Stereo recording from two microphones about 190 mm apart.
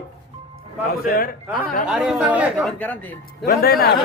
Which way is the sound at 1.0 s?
50° left (ahead or behind).